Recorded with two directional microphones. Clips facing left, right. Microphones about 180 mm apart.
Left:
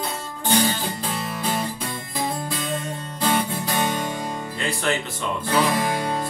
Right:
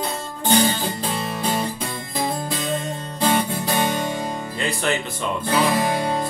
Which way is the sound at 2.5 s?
25° right (ahead or behind).